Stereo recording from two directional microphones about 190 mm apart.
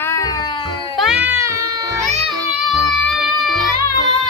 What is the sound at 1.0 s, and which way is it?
Cat, 5° right (ahead or behind).